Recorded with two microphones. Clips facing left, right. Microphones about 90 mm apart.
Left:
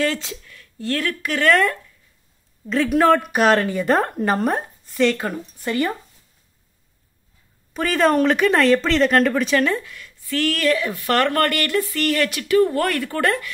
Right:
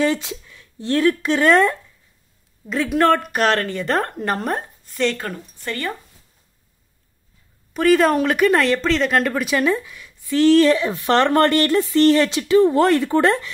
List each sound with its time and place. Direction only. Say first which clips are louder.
0.0 s speech: right 3 dB; 20° right (ahead or behind)
2.6 s speech: left 1 dB; centre (ahead or behind)
7.7 s speech: right 3 dB; centre (ahead or behind); by 13.5 s 25° right (ahead or behind)